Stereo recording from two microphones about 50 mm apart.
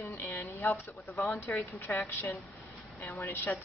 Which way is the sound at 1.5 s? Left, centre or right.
Left.